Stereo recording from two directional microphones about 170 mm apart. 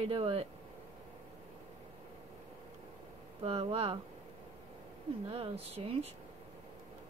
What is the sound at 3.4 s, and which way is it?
Speech, 35° right (ahead or behind).